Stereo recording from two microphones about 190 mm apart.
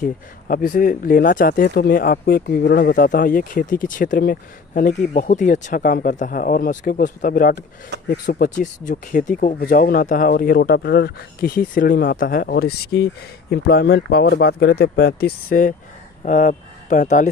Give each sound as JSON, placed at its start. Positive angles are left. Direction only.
{"t": 0.0, "sound": "speech", "side_deg": 45}